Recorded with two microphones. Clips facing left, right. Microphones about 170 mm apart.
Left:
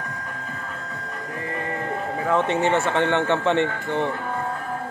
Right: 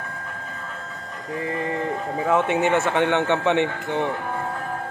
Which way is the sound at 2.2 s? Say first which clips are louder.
Right 1 dB; 15° right (ahead or behind).